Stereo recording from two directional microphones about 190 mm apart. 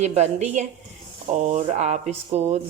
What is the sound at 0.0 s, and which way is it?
A woman's voice, 35° right (ahead or behind).